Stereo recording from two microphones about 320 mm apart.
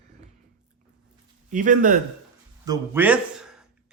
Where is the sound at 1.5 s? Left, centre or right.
Right.